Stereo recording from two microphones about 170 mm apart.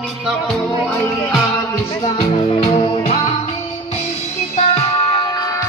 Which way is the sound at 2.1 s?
35° left (ahead or behind).